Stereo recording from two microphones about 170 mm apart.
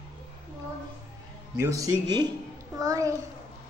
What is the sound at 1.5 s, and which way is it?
A man's voice, 20° right (ahead or behind).